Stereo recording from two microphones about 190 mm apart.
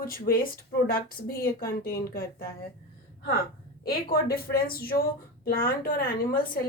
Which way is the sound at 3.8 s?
50° left (ahead or behind).